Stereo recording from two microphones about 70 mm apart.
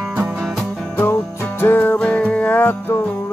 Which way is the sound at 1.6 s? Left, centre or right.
Left.